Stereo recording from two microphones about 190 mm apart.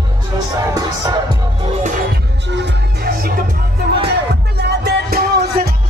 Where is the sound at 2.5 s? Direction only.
65° right (ahead or behind).